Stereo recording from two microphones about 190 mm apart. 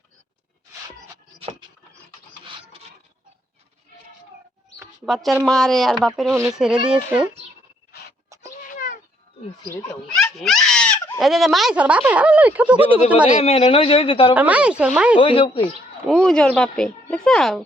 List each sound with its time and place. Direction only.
5.0 s speech: centre (ahead or behind)
8.6 s cat: 45° left (ahead or behind)
9.7 s a sound: 5° left (ahead or behind)
11.2 s speech: centre (ahead or behind)
13.4 s speech: 35° left (ahead or behind)
14.3 s speech: 10° right (ahead or behind)
15.2 s speech: 30° left (ahead or behind)
16.0 s speech: 5° left (ahead or behind)